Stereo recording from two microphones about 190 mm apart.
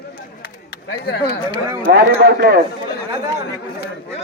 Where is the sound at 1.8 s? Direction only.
50° right (ahead or behind).